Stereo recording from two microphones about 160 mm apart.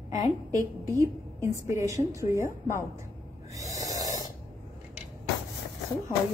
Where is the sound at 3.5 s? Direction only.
20° right (ahead or behind).